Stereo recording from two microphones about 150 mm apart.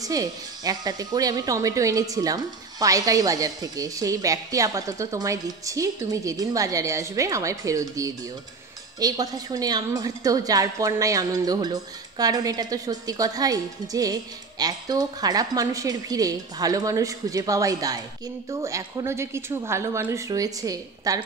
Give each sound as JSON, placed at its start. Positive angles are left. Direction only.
{"t": 0.0, "sound": "a woman's voice", "side_deg": -25}